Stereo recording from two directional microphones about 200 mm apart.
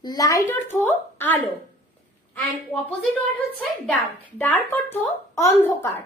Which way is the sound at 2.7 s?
5° left (ahead or behind).